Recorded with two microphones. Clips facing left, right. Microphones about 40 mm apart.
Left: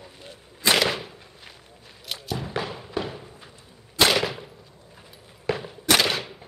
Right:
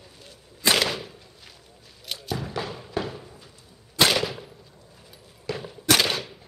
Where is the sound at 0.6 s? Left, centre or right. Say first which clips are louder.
Left 1 dB; centre.